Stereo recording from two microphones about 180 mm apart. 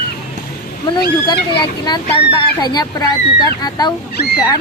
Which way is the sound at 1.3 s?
25° left (ahead or behind).